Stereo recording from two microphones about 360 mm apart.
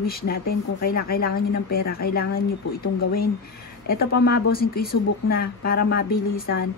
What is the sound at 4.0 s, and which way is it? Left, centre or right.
Speech, left.